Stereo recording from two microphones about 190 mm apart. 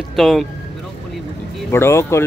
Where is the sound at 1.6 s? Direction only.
15° left (ahead or behind).